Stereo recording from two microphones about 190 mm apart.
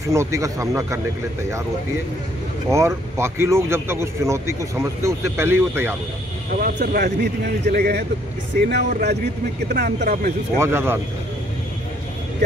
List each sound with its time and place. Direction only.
0.0 s speech: 15° right (ahead or behind)
2.7 s speech: 15° right (ahead or behind)
6.6 s a man's voice: 50° right (ahead or behind)
10.6 s speech: 15° right (ahead or behind)